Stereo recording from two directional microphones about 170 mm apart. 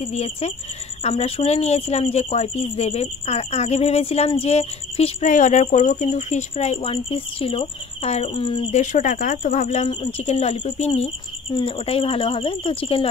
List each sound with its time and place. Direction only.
0.0 s speech: 35° left (ahead or behind)
8.7 s speech: 50° left (ahead or behind); by 13.1 s 35° left (ahead or behind)